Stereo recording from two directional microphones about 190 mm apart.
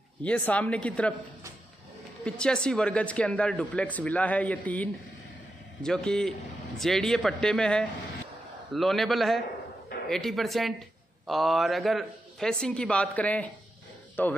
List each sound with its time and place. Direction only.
0.2 s speech: 5° left (ahead or behind)
2.2 s speech: 5° left (ahead or behind)